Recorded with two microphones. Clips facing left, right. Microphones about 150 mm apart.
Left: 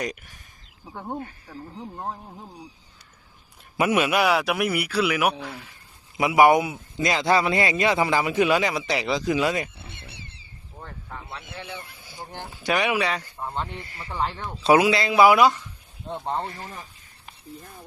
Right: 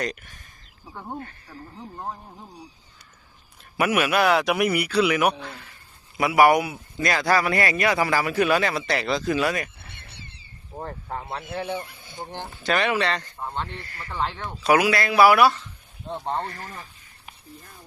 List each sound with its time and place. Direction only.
0.0 s speech: 10° left (ahead or behind)
3.8 s a man's voice: 20° left (ahead or behind)
4.2 s a man's voice: 5° left (ahead or behind); by 9.9 s 20° left (ahead or behind)
10.8 s speech: 40° right (ahead or behind)
12.1 s speech: 20° right (ahead or behind)
12.5 s speech: 10° left (ahead or behind)
13.7 s a man's voice: 20° left (ahead or behind)
14.2 s speech: 10° left (ahead or behind)
14.6 s speech: 25° left (ahead or behind)
16.1 s a man's voice: centre (ahead or behind)
16.4 s speech: 15° left (ahead or behind)